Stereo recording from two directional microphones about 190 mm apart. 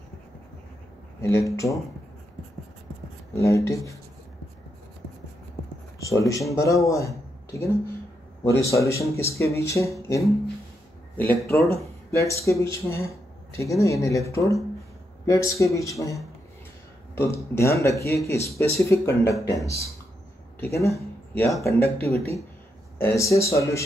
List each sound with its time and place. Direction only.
1.2 s speech: 15° left (ahead or behind)
3.3 s speech: 15° left (ahead or behind)
5.9 s speech: 15° left (ahead or behind)